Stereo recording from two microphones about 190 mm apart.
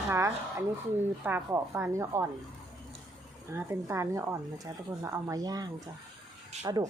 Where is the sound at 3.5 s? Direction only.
15° right (ahead or behind).